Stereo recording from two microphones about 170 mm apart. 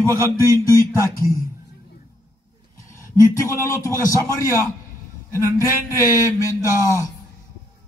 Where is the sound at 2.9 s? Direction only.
15° left (ahead or behind).